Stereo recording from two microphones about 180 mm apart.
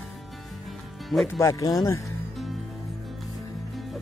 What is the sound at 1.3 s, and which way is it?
Speech, 15° left (ahead or behind).